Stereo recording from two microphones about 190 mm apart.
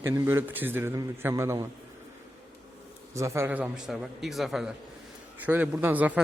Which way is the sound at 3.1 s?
15° right (ahead or behind).